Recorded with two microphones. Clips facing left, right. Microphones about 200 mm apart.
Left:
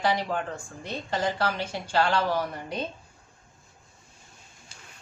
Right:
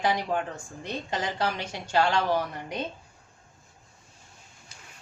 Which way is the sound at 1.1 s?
20° right (ahead or behind).